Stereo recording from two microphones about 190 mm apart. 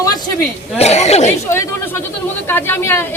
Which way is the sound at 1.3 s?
15° left (ahead or behind).